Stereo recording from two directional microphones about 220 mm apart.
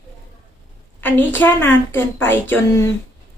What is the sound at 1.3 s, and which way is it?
A woman's voice, 10° left (ahead or behind).